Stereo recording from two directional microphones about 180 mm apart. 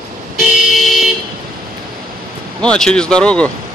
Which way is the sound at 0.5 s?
Centre (ahead or behind).